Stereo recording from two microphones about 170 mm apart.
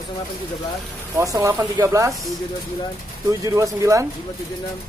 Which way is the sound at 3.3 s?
20° right (ahead or behind).